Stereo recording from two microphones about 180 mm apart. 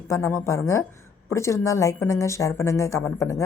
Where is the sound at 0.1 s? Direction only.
15° left (ahead or behind).